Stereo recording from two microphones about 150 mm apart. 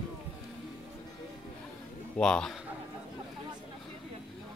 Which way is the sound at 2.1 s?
5° left (ahead or behind).